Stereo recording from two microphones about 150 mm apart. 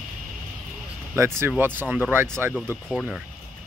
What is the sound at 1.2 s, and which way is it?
Speech, 15° right (ahead or behind).